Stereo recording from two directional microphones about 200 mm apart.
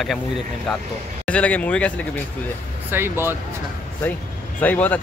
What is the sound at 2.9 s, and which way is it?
Speech, 10° right (ahead or behind).